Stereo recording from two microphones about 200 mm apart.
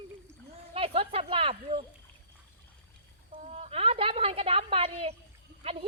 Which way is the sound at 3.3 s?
35° right (ahead or behind).